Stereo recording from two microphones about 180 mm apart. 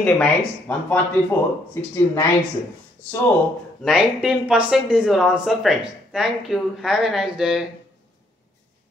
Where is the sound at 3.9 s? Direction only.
5° right (ahead or behind).